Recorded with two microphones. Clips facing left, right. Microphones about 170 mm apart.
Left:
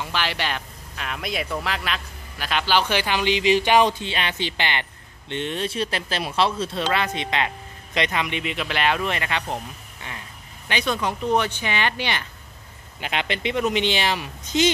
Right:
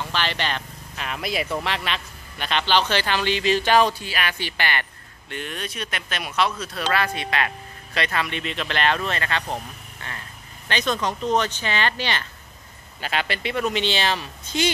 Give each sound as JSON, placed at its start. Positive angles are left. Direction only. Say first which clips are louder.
{"t": 0.0, "sound": "speech", "louder": "even", "side_deg": 10}